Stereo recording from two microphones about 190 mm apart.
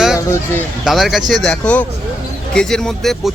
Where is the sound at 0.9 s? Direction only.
Centre (ahead or behind).